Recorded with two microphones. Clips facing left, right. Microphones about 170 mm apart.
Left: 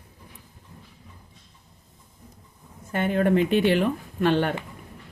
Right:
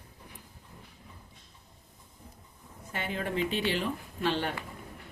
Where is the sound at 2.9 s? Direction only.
50° left (ahead or behind).